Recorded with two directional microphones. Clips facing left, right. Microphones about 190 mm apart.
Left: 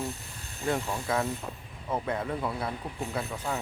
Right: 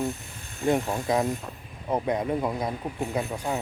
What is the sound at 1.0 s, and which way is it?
Speech, 20° right (ahead or behind).